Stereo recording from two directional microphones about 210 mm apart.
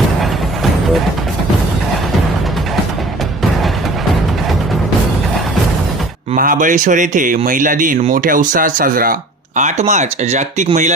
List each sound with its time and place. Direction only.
6.3 s a man's voice: 40° right (ahead or behind)